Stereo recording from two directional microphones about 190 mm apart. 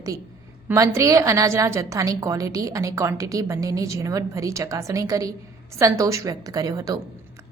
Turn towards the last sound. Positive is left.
turn(degrees=-20)  # may be behind; listen again after turning